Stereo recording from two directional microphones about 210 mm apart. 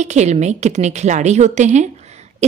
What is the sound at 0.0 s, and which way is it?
A woman's voice, 35° right (ahead or behind).